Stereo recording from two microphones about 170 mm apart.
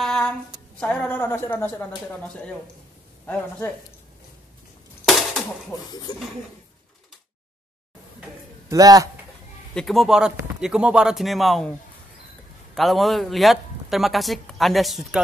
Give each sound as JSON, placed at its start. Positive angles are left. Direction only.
{"t": 0.0, "sound": "a woman's voice", "side_deg": 0}
{"t": 5.0, "sound": "a sound", "side_deg": 0}
{"t": 5.7, "sound": "speech", "side_deg": 25}
{"t": 8.6, "sound": "a man's voice", "side_deg": -20}
{"t": 9.8, "sound": "speech", "side_deg": 0}
{"t": 12.7, "sound": "speech", "side_deg": 0}